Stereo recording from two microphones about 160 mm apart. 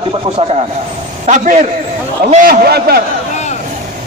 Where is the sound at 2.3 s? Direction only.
60° right (ahead or behind).